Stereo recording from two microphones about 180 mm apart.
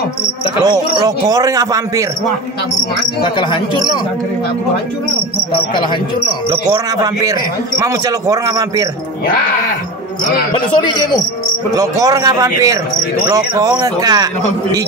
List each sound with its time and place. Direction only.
0.7 s a man's voice: 25° right (ahead or behind)
3.2 s speech: 25° left (ahead or behind)
6.5 s a man's voice: 20° right (ahead or behind)
11.7 s a man's voice: 20° right (ahead or behind)